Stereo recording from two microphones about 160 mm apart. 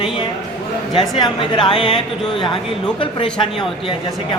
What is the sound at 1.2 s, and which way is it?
Speech, 30° left (ahead or behind).